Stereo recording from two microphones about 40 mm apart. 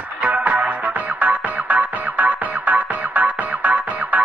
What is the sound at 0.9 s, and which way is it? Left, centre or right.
Music, right.